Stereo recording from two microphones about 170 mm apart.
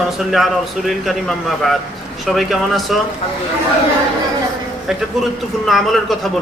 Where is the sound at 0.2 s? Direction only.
Centre (ahead or behind).